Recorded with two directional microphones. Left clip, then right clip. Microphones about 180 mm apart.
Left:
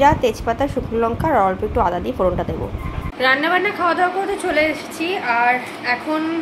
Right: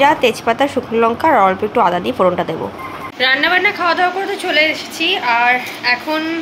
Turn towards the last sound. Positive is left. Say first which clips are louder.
# right 4 dB
turn(degrees=5)  # may be behind; listen again after turning